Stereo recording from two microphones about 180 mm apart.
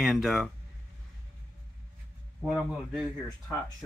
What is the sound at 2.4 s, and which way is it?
Speech, centre (ahead or behind).